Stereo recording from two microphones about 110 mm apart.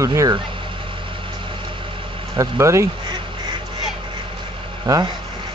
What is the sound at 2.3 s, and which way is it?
Speech, 25° right (ahead or behind).